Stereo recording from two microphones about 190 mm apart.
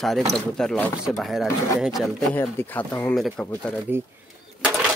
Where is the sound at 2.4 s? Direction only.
10° left (ahead or behind).